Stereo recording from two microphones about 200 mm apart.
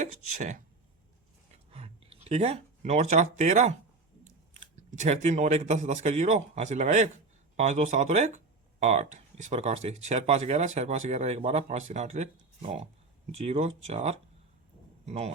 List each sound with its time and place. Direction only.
0.0 s speech: 40° right (ahead or behind)
1.7 s speech: 30° right (ahead or behind)